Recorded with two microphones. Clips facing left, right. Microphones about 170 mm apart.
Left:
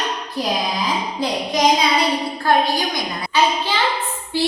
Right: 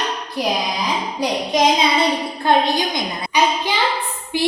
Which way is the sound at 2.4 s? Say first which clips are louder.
Right 2 dB; 20° right (ahead or behind).